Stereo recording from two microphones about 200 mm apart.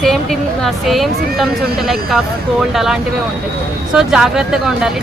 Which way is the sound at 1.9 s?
Centre (ahead or behind).